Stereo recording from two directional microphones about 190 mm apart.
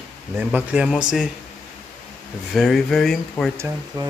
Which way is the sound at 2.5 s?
Centre (ahead or behind).